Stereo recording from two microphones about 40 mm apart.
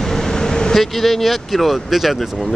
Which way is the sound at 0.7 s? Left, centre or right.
Centre.